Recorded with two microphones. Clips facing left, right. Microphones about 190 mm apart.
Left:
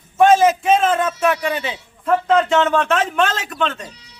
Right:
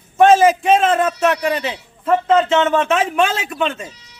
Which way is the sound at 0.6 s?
Centre (ahead or behind).